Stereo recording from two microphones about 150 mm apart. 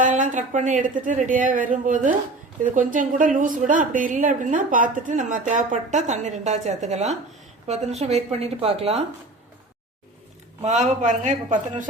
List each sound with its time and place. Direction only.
0.0 s a woman's voice: 60° right (ahead or behind); by 9.0 s 40° right (ahead or behind)
10.6 s speech: 50° right (ahead or behind)